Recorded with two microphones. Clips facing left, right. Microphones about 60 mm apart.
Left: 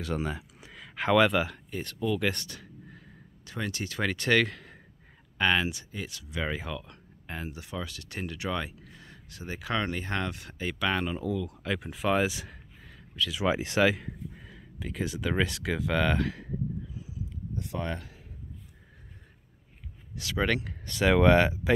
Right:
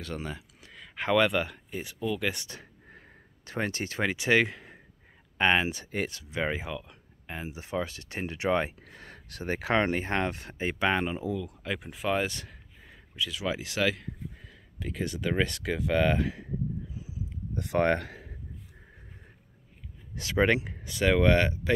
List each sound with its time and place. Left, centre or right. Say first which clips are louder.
0.0 s speech: left 4 dB; centre
2.4 s a sound: left 1 dB; right
3.4 s speech: right 3 dB; right
4.0 s speech: right 1 dB; centre; by 6.4 s right
6.4 s speech: right 2 dB; centre
7.5 s speech: right 5 dB; right
8.8 s speech: right 3 dB; right; by 11.2 s centre
11.2 s speech: left 1 dB; centre
12.8 s a sound: left 2 dB; centre
13.4 s speech: left 6 dB; left
13.7 s speech: left 3 dB; centre
17.6 s speech: right 9 dB; right
20.2 s speech: right 4 dB; right
20.8 s speech: left 3 dB; centre